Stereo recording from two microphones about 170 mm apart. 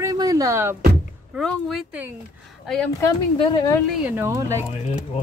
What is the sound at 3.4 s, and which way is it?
Speech, 30° left (ahead or behind).